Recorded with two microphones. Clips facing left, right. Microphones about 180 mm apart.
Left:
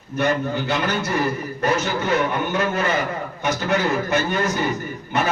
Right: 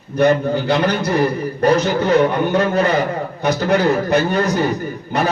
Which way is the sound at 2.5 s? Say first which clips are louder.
Right 6 dB; 35° right (ahead or behind).